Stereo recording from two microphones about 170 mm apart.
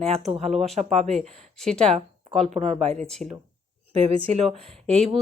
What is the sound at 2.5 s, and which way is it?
Speech, 40° right (ahead or behind).